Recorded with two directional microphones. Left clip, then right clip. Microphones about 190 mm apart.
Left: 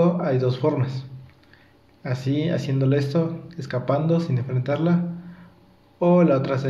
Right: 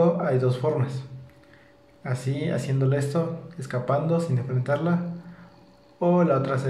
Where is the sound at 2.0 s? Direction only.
30° left (ahead or behind).